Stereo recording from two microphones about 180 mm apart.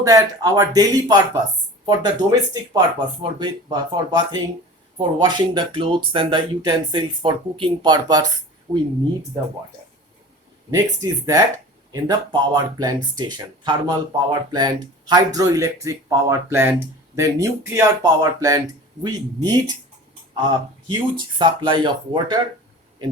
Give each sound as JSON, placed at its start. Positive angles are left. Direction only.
{"t": 0.0, "sound": "speech", "side_deg": -20}
{"t": 10.7, "sound": "speech", "side_deg": -20}
{"t": 20.8, "sound": "speech", "side_deg": -25}